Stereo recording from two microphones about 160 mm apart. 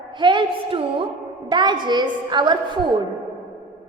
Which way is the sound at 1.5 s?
30° right (ahead or behind).